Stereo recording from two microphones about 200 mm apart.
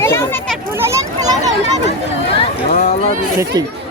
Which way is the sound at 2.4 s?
35° left (ahead or behind).